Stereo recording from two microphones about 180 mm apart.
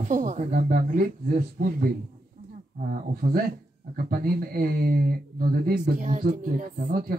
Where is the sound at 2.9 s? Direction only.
55° right (ahead or behind).